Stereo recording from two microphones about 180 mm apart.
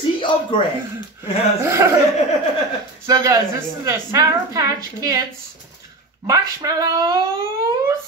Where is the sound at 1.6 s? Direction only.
15° right (ahead or behind).